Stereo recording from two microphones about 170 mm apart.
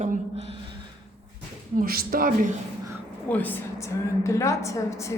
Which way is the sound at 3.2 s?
10° left (ahead or behind).